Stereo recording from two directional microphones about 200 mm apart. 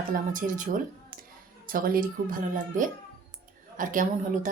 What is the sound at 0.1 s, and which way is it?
A woman's voice, 40° right (ahead or behind).